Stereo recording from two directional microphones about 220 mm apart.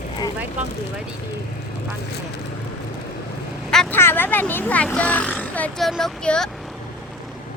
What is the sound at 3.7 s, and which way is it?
Speech, 5° left (ahead or behind).